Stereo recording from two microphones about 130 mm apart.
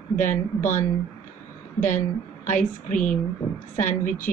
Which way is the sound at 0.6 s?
15° left (ahead or behind).